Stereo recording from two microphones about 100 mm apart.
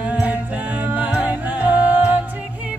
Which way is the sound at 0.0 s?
15° right (ahead or behind).